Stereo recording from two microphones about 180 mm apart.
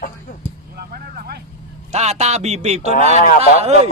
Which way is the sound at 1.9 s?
40° right (ahead or behind).